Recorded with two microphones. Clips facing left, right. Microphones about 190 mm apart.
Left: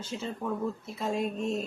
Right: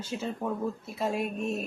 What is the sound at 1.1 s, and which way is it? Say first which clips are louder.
Speech: left 1 dB; 20° left (ahead or behind).